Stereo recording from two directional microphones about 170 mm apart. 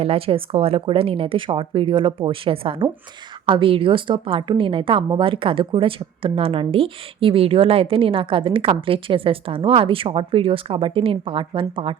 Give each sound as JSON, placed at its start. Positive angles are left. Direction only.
{"t": 0.0, "sound": "a woman's voice", "side_deg": -35}